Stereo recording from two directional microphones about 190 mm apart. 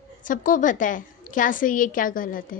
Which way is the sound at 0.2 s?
45° left (ahead or behind).